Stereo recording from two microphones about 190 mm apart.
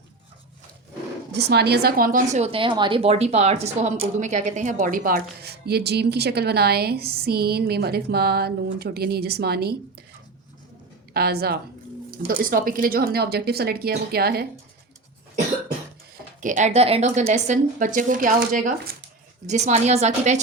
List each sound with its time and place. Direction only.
1.3 s a woman's voice: 60° right (ahead or behind)
11.1 s a woman's voice: 55° right (ahead or behind)
16.4 s speech: 40° right (ahead or behind)
19.5 s speech: 35° right (ahead or behind)